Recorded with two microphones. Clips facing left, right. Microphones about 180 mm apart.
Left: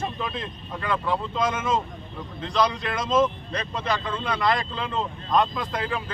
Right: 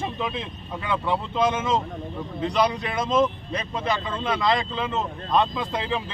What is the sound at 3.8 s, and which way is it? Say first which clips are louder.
Speech: right 1 dB; 25° right (ahead or behind).